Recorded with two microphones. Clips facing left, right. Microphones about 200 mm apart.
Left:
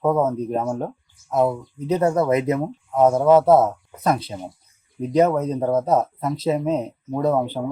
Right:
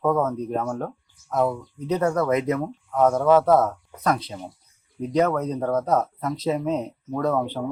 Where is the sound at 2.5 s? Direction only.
25° left (ahead or behind).